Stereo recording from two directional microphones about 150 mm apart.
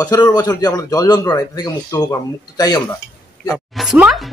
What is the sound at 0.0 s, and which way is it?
A man's voice, 25° left (ahead or behind).